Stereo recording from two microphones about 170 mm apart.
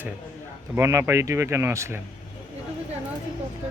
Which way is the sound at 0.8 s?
15° right (ahead or behind).